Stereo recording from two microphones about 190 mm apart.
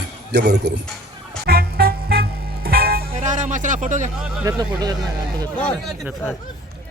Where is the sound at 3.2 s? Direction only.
40° right (ahead or behind).